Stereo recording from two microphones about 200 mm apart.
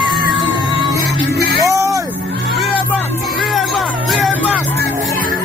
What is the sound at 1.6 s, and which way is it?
Music, 15° right (ahead or behind).